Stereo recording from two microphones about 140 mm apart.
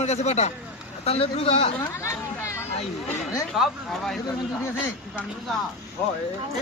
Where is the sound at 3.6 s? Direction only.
Centre (ahead or behind).